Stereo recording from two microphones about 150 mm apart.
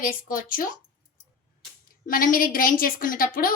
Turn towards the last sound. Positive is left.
turn(degrees=70)  # may be behind; listen again after turning